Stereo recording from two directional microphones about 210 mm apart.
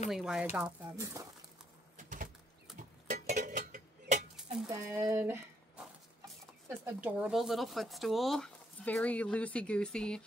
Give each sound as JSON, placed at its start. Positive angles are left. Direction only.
{"t": 0.1, "sound": "speech", "side_deg": 0}
{"t": 0.6, "sound": "speech", "side_deg": -15}
{"t": 2.0, "sound": "a sound", "side_deg": -40}
{"t": 4.6, "sound": "speech", "side_deg": -15}